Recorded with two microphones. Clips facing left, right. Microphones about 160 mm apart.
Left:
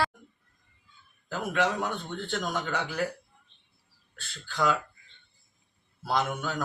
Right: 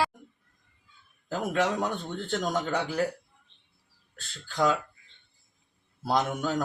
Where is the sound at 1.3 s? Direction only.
35° right (ahead or behind).